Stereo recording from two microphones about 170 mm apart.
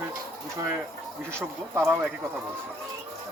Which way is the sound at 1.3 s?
15° right (ahead or behind).